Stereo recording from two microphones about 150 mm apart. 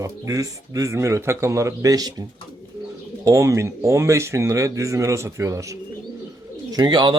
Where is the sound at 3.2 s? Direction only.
20° right (ahead or behind).